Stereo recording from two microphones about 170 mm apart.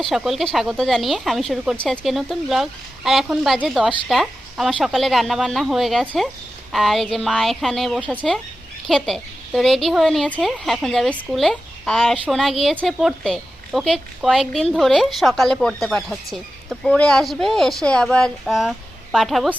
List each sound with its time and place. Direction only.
0.0 s a woman's voice: centre (ahead or behind)
11.1 s speech: 10° right (ahead or behind)
11.3 s a woman's voice: centre (ahead or behind)